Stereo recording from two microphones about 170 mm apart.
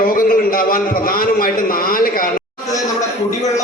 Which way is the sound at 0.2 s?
55° left (ahead or behind).